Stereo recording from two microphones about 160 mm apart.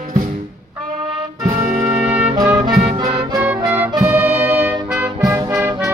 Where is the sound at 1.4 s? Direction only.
60° right (ahead or behind).